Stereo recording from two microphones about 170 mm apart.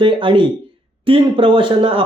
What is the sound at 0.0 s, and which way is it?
A man's voice, 30° right (ahead or behind).